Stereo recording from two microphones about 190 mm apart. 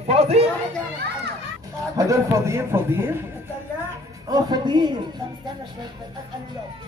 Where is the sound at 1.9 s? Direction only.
20° right (ahead or behind).